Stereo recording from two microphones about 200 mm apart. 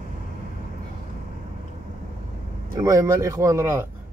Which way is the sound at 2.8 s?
15° right (ahead or behind).